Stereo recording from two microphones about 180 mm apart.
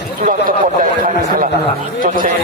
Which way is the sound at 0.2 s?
50° right (ahead or behind).